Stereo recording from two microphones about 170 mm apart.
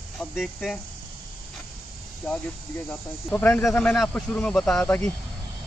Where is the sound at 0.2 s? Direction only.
Centre (ahead or behind).